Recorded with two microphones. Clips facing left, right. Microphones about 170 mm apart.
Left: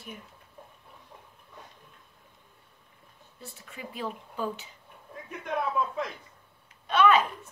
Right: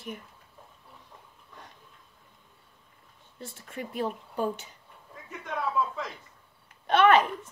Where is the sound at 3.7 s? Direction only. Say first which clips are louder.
Right 5 dB; 45° right (ahead or behind).